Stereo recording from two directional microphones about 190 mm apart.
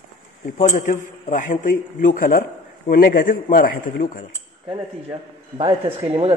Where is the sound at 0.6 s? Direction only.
45° left (ahead or behind).